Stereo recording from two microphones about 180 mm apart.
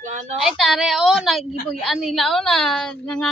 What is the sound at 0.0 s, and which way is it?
Speech, 40° right (ahead or behind).